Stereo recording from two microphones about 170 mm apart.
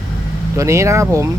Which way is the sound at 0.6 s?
15° right (ahead or behind).